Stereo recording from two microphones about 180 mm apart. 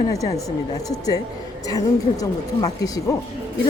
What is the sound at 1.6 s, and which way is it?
A woman's voice, 20° left (ahead or behind).